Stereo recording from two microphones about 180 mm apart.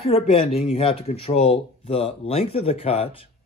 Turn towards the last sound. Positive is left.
turn(degrees=35)  # may be behind; listen again after turning